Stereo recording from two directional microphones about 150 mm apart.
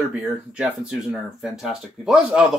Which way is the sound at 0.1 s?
5° right (ahead or behind).